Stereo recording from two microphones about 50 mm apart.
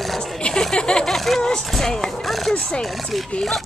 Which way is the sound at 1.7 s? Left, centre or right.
Centre.